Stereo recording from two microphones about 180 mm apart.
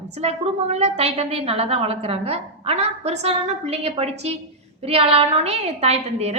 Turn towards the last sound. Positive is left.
turn(degrees=-35)  # may be behind; listen again after turning